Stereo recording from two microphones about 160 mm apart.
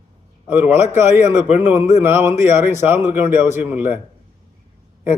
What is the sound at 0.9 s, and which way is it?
A man's voice, 15° right (ahead or behind).